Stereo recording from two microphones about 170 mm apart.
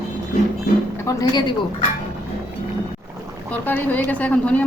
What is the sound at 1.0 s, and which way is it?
Speech, 25° left (ahead or behind).